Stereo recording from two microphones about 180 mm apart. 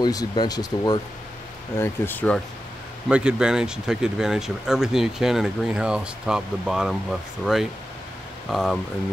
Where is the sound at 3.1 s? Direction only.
5° right (ahead or behind).